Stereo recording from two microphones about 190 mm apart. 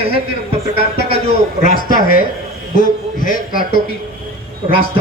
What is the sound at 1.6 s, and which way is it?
A man's voice, 45° left (ahead or behind).